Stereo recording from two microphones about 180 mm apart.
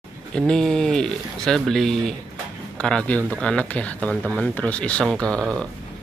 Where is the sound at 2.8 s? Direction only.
5° left (ahead or behind).